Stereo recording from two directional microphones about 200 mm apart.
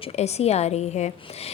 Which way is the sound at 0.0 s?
30° left (ahead or behind).